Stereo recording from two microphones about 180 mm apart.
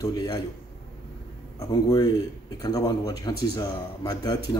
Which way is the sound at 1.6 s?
20° left (ahead or behind).